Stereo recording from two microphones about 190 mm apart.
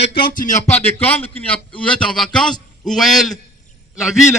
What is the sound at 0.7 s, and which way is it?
A man's voice, 10° left (ahead or behind).